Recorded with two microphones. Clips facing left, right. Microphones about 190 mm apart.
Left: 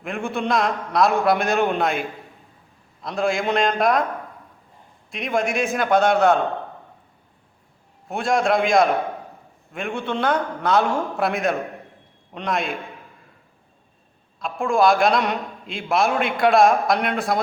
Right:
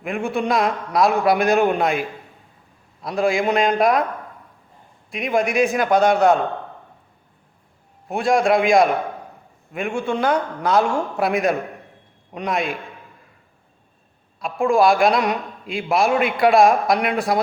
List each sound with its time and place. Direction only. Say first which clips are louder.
0.0 s a man's voice: right 3 dB; centre (ahead or behind)
5.1 s a man's voice: right 3 dB; centre (ahead or behind)
8.1 s a man's voice: right 3 dB; centre (ahead or behind)
14.4 s a man's voice: right 2 dB; centre (ahead or behind)